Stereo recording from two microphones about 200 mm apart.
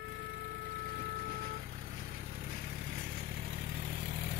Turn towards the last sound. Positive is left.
turn(degrees=-40)  # may be behind; listen again after turning